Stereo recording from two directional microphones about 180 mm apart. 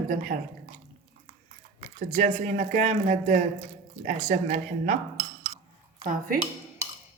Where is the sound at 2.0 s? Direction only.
45° right (ahead or behind).